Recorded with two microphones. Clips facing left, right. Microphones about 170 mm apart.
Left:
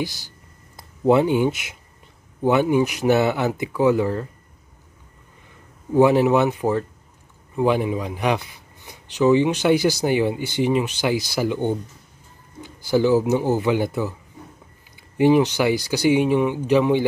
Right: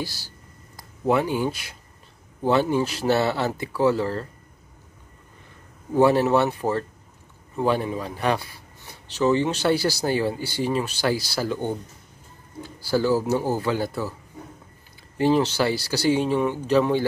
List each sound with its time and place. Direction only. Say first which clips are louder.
0.0 s speech: left 5 dB; 20° left (ahead or behind)
5.9 s speech: left 3 dB; 15° left (ahead or behind)
15.1 s speech: left 4 dB; 15° left (ahead or behind)